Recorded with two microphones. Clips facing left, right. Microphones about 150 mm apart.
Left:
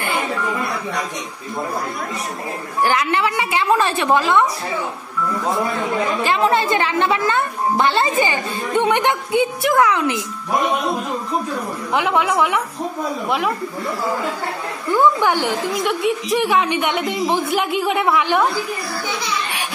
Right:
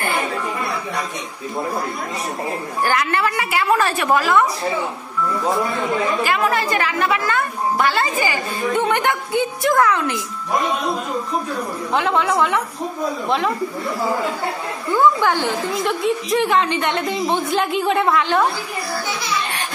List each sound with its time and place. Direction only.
2.8 s a woman's voice: 15° left (ahead or behind)
6.2 s a woman's voice: 25° left (ahead or behind)
11.9 s a woman's voice: 10° left (ahead or behind)
15.0 s a woman's voice: 15° left (ahead or behind)